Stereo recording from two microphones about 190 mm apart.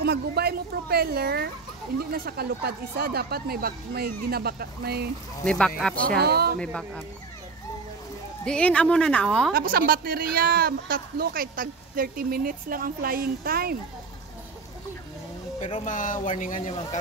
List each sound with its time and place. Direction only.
0.0 s speech: 55° right (ahead or behind)
5.4 s speech: 5° left (ahead or behind)
6.0 s speech: 55° right (ahead or behind)
6.6 s speech: 5° left (ahead or behind)
8.5 s speech: 5° left (ahead or behind)
9.5 s a woman's voice: 50° right (ahead or behind)
15.8 s speech: 40° left (ahead or behind)